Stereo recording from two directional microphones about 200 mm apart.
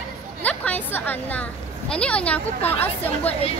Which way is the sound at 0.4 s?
10° left (ahead or behind).